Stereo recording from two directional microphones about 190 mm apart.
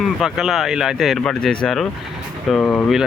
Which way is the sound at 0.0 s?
Centre (ahead or behind).